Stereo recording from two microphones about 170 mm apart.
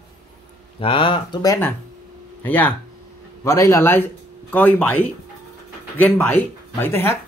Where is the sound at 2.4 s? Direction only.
10° left (ahead or behind).